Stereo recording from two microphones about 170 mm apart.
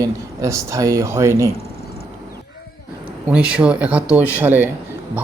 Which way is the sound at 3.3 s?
5° right (ahead or behind).